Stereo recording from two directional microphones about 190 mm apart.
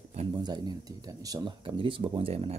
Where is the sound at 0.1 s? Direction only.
30° right (ahead or behind).